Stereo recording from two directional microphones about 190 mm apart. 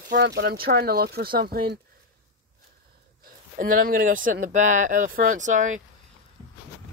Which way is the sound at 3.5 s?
45° right (ahead or behind).